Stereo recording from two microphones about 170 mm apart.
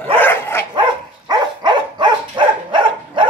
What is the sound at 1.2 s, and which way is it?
Dog, 25° right (ahead or behind).